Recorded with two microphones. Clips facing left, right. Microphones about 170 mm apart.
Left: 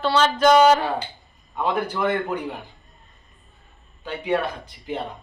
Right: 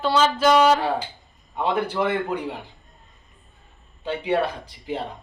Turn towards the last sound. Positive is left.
turn(degrees=-30)  # may be behind; listen again after turning